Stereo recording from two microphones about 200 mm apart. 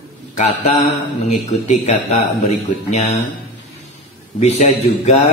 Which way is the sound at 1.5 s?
35° left (ahead or behind).